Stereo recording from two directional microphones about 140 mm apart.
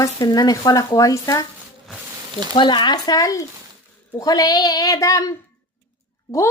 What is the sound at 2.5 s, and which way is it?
Speech, 35° left (ahead or behind).